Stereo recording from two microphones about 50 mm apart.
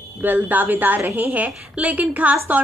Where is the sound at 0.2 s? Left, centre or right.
Right.